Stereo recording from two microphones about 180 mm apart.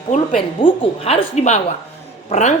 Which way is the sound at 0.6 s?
30° left (ahead or behind).